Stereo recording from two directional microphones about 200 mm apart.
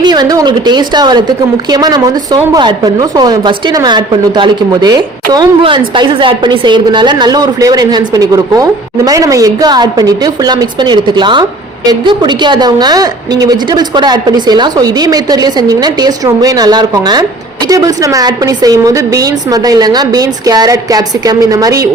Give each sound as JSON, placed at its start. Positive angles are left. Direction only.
{"t": 0.0, "sound": "a woman's voice", "side_deg": -20}